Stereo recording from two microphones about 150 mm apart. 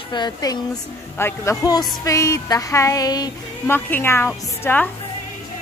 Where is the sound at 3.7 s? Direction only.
15° left (ahead or behind).